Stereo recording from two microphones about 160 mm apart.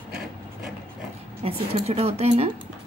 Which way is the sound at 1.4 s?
35° right (ahead or behind).